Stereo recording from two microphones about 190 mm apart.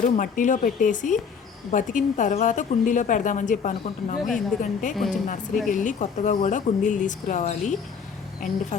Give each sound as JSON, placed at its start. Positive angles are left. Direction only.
{"t": 0.2, "sound": "a woman's voice", "side_deg": 40}